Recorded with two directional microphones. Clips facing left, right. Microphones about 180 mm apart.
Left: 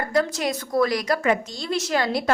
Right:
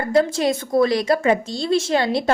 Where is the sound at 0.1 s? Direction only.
25° right (ahead or behind).